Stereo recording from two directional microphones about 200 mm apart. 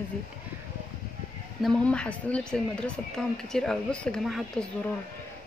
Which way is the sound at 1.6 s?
5° left (ahead or behind).